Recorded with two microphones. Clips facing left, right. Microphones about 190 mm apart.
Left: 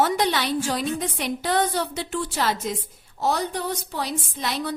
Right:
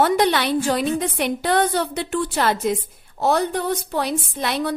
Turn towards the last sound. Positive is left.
turn(degrees=-60)  # may be behind; listen again after turning